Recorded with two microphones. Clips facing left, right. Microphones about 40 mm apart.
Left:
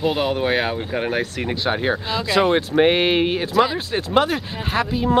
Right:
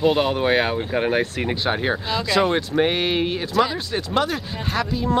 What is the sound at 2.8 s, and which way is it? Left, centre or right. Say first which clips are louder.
Speech: left 4 dB; centre.